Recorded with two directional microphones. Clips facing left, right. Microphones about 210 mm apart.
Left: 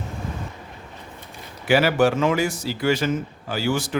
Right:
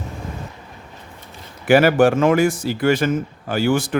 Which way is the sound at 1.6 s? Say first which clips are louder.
Right 5 dB; 50° right (ahead or behind).